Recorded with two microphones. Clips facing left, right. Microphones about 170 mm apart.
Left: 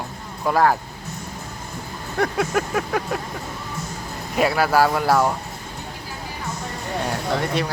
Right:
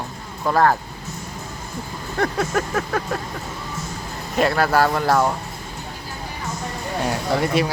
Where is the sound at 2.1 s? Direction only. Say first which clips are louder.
Even; 10° left (ahead or behind).